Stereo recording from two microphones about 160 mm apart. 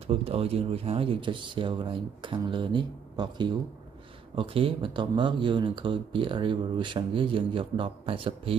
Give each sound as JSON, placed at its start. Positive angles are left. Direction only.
{"t": 0.0, "sound": "speech", "side_deg": -40}